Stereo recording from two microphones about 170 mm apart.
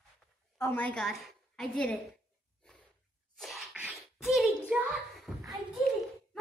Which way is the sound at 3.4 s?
Centre (ahead or behind).